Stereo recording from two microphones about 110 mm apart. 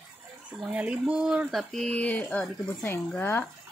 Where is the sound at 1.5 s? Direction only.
Centre (ahead or behind).